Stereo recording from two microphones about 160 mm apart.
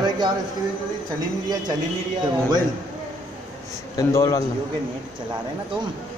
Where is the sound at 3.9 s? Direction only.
20° left (ahead or behind).